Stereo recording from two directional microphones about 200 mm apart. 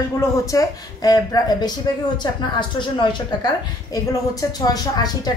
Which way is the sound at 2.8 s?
25° left (ahead or behind).